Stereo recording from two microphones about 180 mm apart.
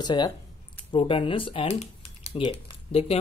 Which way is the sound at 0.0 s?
25° left (ahead or behind).